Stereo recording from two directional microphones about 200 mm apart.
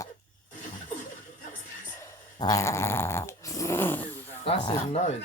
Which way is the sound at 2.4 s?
15° left (ahead or behind).